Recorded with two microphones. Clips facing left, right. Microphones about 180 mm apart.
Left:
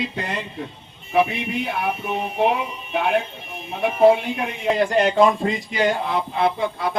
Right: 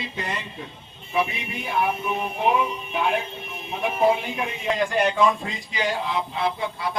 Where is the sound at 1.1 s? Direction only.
60° left (ahead or behind).